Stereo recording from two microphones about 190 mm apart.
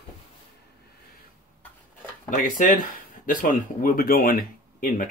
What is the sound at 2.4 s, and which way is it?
Speech, 45° left (ahead or behind).